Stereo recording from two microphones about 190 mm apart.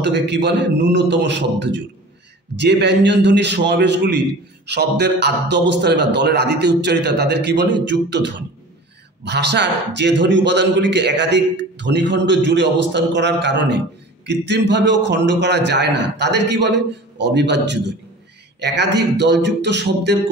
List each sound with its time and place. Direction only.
0.0 s a man's voice: 65° right (ahead or behind)